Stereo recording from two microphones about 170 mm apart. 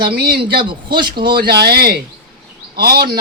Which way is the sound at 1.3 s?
70° right (ahead or behind).